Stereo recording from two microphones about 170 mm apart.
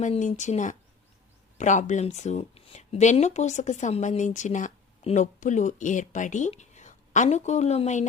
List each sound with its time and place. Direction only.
0.0 s speech: 45° left (ahead or behind)